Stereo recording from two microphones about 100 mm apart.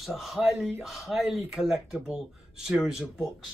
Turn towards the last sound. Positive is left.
turn(degrees=0)  # may be behind; listen again after turning